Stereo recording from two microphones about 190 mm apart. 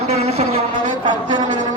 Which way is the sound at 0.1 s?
35° right (ahead or behind).